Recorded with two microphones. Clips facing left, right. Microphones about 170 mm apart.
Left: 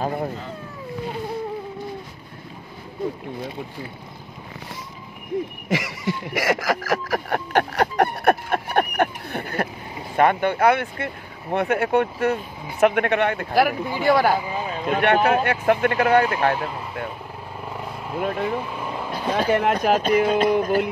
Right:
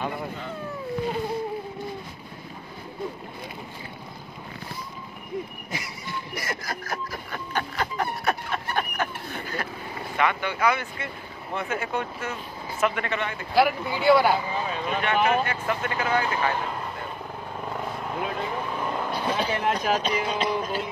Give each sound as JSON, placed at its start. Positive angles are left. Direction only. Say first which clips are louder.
{"t": 0.0, "sound": "a sound", "louder": "left 6 dB", "side_deg": 40}
{"t": 5.7, "sound": "speech", "louder": "left 10 dB", "side_deg": 90}
{"t": 13.6, "sound": "speech", "louder": "left 1 dB", "side_deg": 45}
{"t": 14.9, "sound": "speech", "louder": "left 6 dB", "side_deg": 65}
{"t": 17.7, "sound": "vehicle", "louder": "left 3 dB", "side_deg": 5}
{"t": 19.3, "sound": "speech", "louder": "left 8 dB", "side_deg": 50}